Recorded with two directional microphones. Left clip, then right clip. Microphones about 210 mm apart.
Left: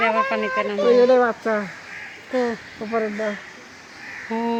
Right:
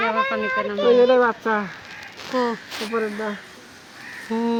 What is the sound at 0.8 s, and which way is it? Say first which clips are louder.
Speech: even; 10° left (ahead or behind).